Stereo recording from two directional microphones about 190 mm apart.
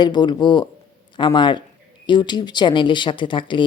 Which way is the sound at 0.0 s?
25° left (ahead or behind).